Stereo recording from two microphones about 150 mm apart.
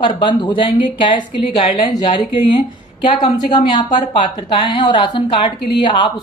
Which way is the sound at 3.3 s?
30° left (ahead or behind).